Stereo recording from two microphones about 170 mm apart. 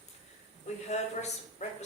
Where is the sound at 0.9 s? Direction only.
40° left (ahead or behind).